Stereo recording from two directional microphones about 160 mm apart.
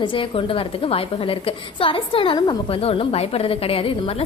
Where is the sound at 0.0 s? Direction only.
30° left (ahead or behind).